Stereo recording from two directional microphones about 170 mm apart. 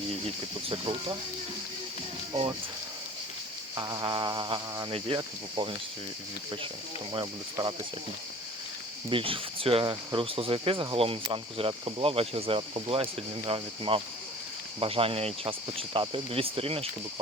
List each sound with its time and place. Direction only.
0.7 s speech: 30° right (ahead or behind)
2.3 s speech: 35° right (ahead or behind)
3.8 s speech: 25° right (ahead or behind)
7.1 s speech: 25° right (ahead or behind)
9.0 s speech: 30° right (ahead or behind)